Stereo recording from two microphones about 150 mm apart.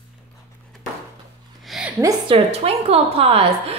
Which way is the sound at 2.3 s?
40° right (ahead or behind).